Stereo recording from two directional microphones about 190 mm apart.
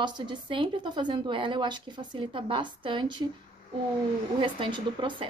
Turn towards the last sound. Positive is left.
turn(degrees=-25)  # may be behind; listen again after turning